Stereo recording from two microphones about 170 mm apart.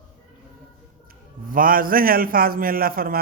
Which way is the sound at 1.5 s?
55° right (ahead or behind).